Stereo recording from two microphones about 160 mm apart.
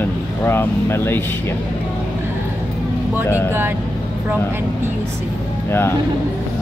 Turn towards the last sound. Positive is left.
turn(degrees=15)  # may be behind; listen again after turning